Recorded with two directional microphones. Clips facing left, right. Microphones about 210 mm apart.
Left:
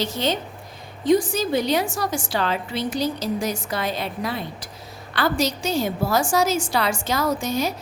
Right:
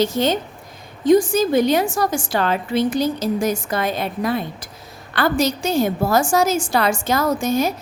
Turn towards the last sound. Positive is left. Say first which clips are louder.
# right 4 dB
turn(degrees=-50)  # may be behind; listen again after turning